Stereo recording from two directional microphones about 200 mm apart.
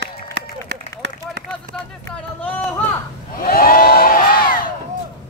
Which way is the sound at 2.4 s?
5° left (ahead or behind).